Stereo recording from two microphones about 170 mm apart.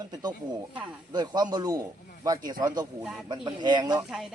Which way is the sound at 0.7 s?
5° right (ahead or behind).